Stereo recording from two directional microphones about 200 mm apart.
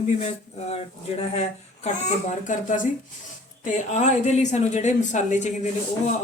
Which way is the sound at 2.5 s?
40° left (ahead or behind).